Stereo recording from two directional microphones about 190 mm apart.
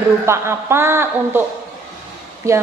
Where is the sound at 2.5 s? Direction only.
15° right (ahead or behind).